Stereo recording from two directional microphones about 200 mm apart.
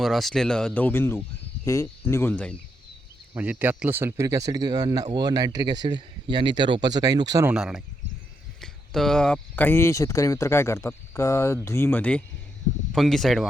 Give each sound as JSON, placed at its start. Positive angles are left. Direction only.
{"t": 0.0, "sound": "speech", "side_deg": 0}
{"t": 3.3, "sound": "speech", "side_deg": -10}
{"t": 7.5, "sound": "speech", "side_deg": -5}